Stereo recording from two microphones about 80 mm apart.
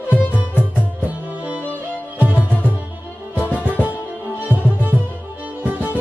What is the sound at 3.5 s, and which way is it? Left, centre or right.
Music, centre.